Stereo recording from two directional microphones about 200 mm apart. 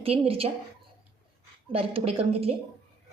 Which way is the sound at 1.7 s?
30° right (ahead or behind).